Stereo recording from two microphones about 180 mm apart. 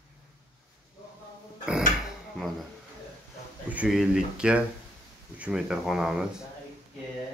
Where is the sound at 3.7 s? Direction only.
5° right (ahead or behind).